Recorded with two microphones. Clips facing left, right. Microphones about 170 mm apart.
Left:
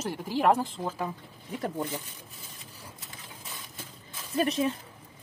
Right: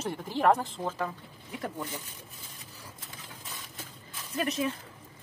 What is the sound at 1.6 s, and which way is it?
Speech, 35° left (ahead or behind).